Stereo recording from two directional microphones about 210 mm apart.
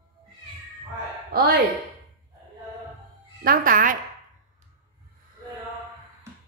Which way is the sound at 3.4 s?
40° right (ahead or behind).